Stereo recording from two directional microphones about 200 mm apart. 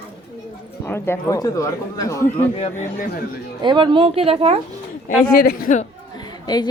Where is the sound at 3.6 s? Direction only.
25° right (ahead or behind).